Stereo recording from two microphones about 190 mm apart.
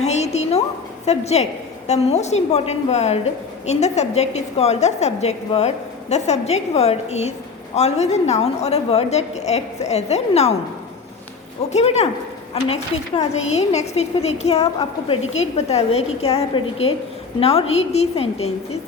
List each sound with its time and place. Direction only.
0.0 s a sound: 35° left (ahead or behind)
1.0 s a woman's voice: 35° left (ahead or behind)
11.7 s a woman's voice: 35° left (ahead or behind)